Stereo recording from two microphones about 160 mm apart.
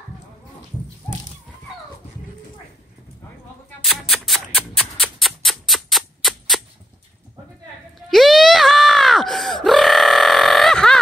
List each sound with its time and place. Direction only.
3.8 s music: centre (ahead or behind)
8.1 s screaming: centre (ahead or behind)